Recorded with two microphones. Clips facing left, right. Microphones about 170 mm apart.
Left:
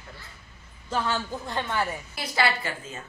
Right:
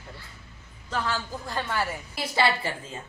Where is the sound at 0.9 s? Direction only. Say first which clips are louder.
Left 2 dB; 25° left (ahead or behind).